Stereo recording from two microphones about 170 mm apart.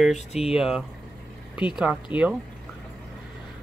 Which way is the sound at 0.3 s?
35° left (ahead or behind).